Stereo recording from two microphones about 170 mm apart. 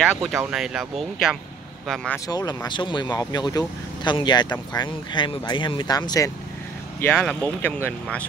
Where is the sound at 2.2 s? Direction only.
25° left (ahead or behind).